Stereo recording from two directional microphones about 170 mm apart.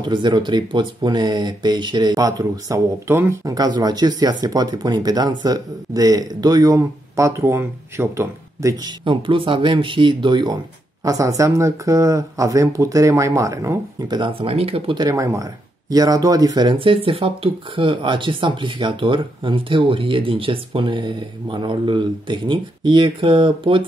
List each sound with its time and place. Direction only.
0.0 s speech: 25° right (ahead or behind)
9.0 s speech: 30° right (ahead or behind)
15.0 s speech: 20° right (ahead or behind)